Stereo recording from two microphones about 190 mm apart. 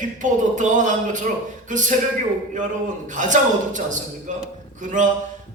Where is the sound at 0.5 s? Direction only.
40° right (ahead or behind).